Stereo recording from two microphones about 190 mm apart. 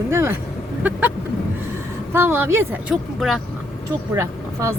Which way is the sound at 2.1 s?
10° right (ahead or behind).